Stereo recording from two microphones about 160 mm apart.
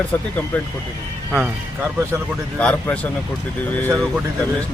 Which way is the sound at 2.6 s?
10° left (ahead or behind).